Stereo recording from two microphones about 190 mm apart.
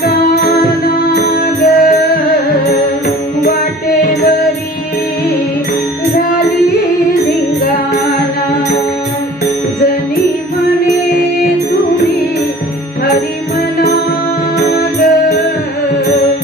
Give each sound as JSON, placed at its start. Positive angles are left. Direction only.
{"t": 0.0, "sound": "music", "side_deg": 55}
{"t": 6.1, "sound": "music", "side_deg": 55}
{"t": 14.7, "sound": "music", "side_deg": 55}